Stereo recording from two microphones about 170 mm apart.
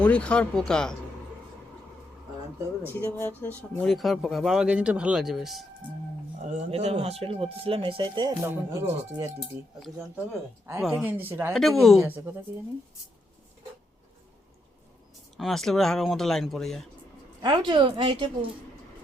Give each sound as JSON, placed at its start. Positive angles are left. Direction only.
{"t": 0.0, "sound": "speech", "side_deg": 5}
{"t": 2.8, "sound": "speech", "side_deg": 15}
{"t": 6.4, "sound": "speech", "side_deg": -40}
{"t": 10.8, "sound": "speech", "side_deg": -5}
{"t": 11.5, "sound": "speech", "side_deg": 0}
{"t": 12.0, "sound": "speech", "side_deg": -10}
{"t": 15.4, "sound": "speech", "side_deg": 0}
{"t": 17.4, "sound": "speech", "side_deg": -25}